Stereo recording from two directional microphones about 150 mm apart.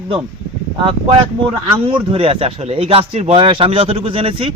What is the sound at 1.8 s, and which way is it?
Speech, 40° right (ahead or behind).